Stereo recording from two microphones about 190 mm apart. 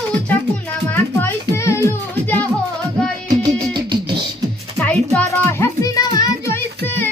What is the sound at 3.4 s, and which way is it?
Music, 25° right (ahead or behind).